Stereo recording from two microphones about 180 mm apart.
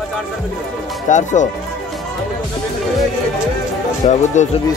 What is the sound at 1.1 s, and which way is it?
Speech, 40° left (ahead or behind).